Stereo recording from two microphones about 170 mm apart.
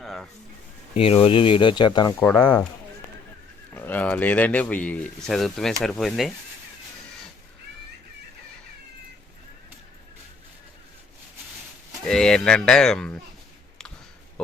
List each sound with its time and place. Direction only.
0.0 s a sound: centre (ahead or behind)
0.9 s speech: 35° left (ahead or behind)
3.8 s speech: 10° left (ahead or behind)
12.0 s speech: 5° left (ahead or behind)